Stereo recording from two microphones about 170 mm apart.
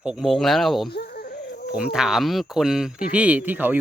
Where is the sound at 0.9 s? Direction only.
70° left (ahead or behind).